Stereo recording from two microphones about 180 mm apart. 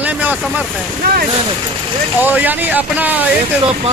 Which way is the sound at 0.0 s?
10° right (ahead or behind).